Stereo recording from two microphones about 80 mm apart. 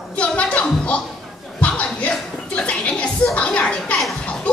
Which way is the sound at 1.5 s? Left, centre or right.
Centre.